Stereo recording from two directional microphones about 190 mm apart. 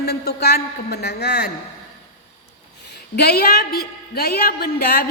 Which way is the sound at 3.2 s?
55° left (ahead or behind).